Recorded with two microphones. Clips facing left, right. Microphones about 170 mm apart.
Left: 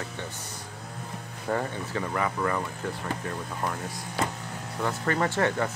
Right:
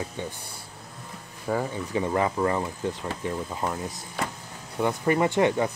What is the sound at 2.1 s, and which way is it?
Speech, 25° right (ahead or behind).